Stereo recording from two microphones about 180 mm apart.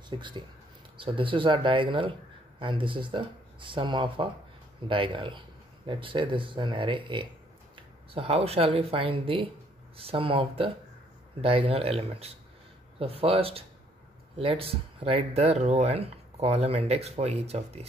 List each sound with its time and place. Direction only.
0.1 s speech: 25° right (ahead or behind)